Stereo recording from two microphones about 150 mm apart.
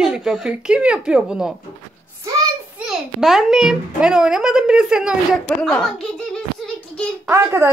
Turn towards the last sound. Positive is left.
turn(degrees=-15)  # may be behind; listen again after turning